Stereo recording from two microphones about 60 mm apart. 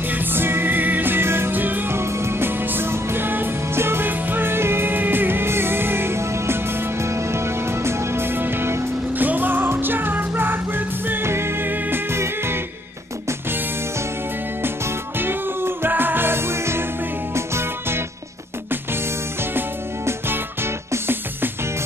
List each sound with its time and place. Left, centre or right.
0.1 s music: right
2.0 s music: right
15.1 s music: right
20.1 s music: right